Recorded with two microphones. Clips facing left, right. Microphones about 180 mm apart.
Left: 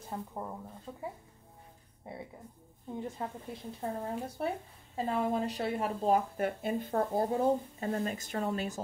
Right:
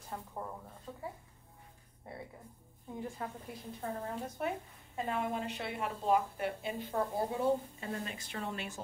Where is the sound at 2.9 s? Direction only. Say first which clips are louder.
Left 3 dB; 20° left (ahead or behind).